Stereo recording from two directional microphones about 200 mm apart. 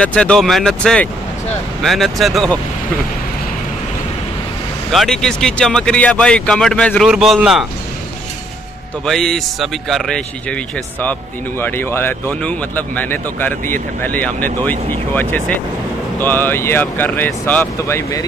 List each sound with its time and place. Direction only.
0.0 s speech: 5° left (ahead or behind)
4.9 s speech: centre (ahead or behind)
9.0 s speech: centre (ahead or behind)